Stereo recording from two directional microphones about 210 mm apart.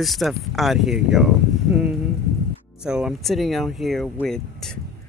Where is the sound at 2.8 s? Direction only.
5° right (ahead or behind).